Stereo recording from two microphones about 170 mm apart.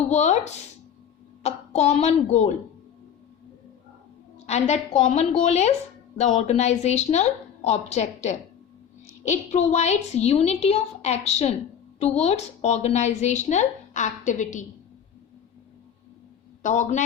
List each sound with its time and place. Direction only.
0.1 s a woman's voice: 40° left (ahead or behind)
4.4 s a woman's voice: 40° left (ahead or behind)
16.6 s a woman's voice: 45° left (ahead or behind)